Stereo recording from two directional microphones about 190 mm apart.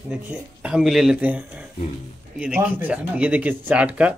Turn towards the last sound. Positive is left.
turn(degrees=-5)  # may be behind; listen again after turning